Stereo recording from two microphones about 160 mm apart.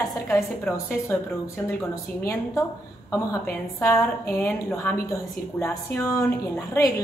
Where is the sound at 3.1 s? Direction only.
20° left (ahead or behind).